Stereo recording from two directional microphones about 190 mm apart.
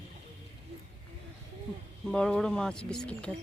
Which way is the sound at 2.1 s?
5° left (ahead or behind).